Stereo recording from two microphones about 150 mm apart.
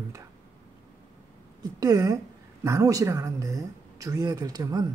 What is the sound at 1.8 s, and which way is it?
A woman's voice, 25° right (ahead or behind).